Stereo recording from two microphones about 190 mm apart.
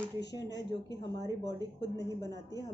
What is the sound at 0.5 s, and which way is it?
Speech, 65° left (ahead or behind).